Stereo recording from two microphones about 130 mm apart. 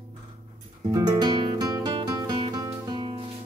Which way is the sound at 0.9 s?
30° right (ahead or behind).